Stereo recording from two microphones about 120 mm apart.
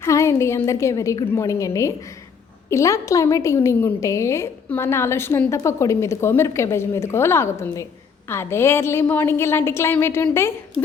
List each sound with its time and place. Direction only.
0.0 s a woman's voice: 25° left (ahead or behind)